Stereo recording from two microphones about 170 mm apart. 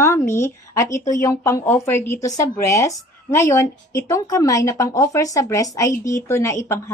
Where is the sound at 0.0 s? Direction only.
15° left (ahead or behind).